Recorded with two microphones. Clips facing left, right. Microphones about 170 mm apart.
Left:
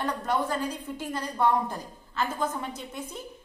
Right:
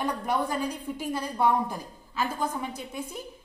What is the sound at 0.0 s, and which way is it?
A woman's voice, 10° right (ahead or behind).